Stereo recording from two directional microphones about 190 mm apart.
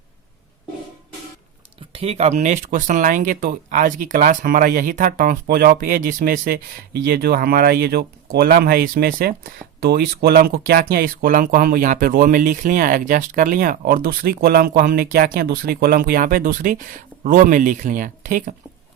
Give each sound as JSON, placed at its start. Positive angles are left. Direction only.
{"t": 1.9, "sound": "speech", "side_deg": -30}